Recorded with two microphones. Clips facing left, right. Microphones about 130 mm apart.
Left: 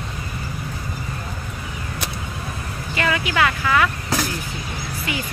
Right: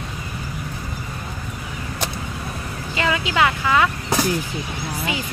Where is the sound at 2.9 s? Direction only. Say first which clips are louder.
Right 1 dB; 20° right (ahead or behind).